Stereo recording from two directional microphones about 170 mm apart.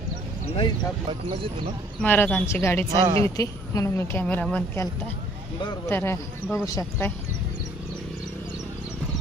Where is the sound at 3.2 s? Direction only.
20° left (ahead or behind).